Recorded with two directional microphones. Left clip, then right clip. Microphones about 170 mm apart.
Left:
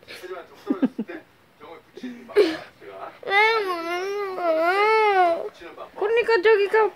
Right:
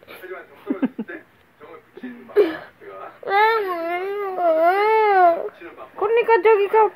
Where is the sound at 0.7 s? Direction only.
20° left (ahead or behind).